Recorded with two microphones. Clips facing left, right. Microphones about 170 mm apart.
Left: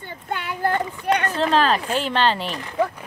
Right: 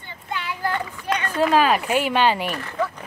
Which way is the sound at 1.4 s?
10° right (ahead or behind).